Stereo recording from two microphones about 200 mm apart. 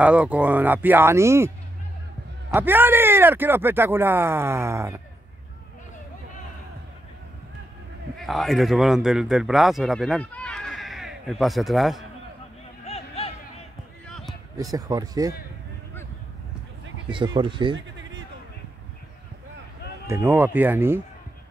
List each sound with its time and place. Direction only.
0.0 s speech: 5° right (ahead or behind)
2.5 s speech: 10° right (ahead or behind)
8.2 s speech: centre (ahead or behind)
12.8 s a sound: 30° left (ahead or behind)
14.0 s basketball bounce: 5° left (ahead or behind)
14.6 s speech: 20° right (ahead or behind)
17.1 s speech: 25° right (ahead or behind)
20.1 s speech: 10° right (ahead or behind)